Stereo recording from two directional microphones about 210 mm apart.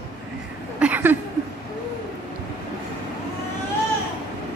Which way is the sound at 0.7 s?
5° right (ahead or behind).